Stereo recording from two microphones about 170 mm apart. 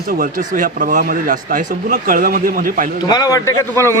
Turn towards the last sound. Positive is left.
turn(degrees=15)  # may be behind; listen again after turning